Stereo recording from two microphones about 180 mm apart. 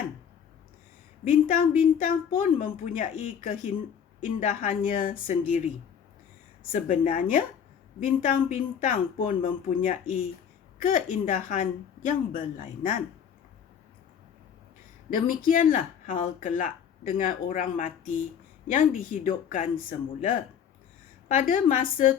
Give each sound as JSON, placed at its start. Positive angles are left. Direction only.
{"t": 1.3, "sound": "speech", "side_deg": 45}
{"t": 6.7, "sound": "speech", "side_deg": 45}
{"t": 15.1, "sound": "speech", "side_deg": 50}
{"t": 21.2, "sound": "speech", "side_deg": 45}